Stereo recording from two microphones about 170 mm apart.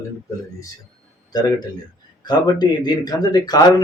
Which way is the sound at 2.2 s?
25° left (ahead or behind).